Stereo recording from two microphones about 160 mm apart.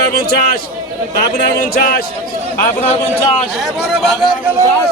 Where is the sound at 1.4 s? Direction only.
75° left (ahead or behind).